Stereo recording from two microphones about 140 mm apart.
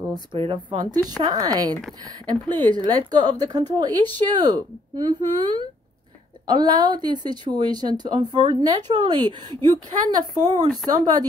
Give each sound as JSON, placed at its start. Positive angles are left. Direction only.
{"t": 0.1, "sound": "speech", "side_deg": -35}
{"t": 10.4, "sound": "speech", "side_deg": -55}
{"t": 10.9, "sound": "speech", "side_deg": -30}